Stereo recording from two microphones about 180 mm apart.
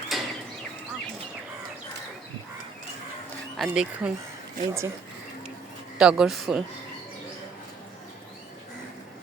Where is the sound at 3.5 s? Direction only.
5° right (ahead or behind).